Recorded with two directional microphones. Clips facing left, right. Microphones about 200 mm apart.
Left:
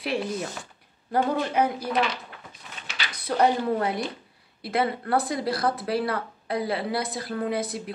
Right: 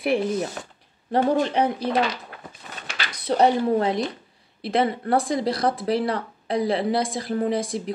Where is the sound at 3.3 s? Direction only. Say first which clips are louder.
Right 4 dB; 20° right (ahead or behind).